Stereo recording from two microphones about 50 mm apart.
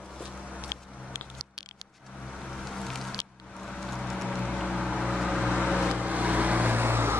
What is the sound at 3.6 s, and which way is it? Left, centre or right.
Vehicle, centre.